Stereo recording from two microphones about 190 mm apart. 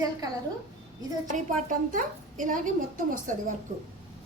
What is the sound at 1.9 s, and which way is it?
A woman's voice, 45° right (ahead or behind).